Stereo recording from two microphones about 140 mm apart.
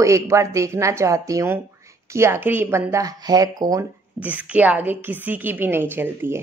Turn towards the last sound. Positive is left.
turn(degrees=-15)  # may be behind; listen again after turning